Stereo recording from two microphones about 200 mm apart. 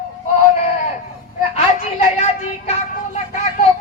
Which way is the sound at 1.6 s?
30° left (ahead or behind).